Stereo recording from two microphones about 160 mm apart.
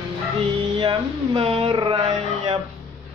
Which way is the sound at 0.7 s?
30° right (ahead or behind).